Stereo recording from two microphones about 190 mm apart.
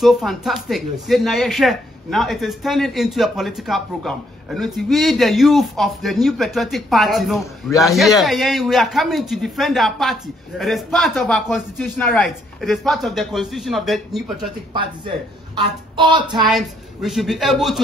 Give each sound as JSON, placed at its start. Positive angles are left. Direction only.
{"t": 0.0, "sound": "speech", "side_deg": 0}
{"t": 14.7, "sound": "a woman's voice", "side_deg": -25}
{"t": 16.4, "sound": "speech", "side_deg": 0}